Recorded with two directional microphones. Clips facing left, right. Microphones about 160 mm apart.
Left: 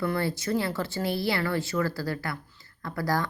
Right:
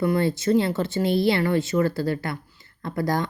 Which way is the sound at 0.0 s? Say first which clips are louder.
Right 6 dB; 20° right (ahead or behind).